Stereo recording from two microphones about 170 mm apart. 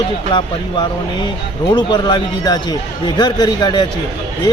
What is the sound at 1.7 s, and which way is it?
A man's voice, 25° left (ahead or behind).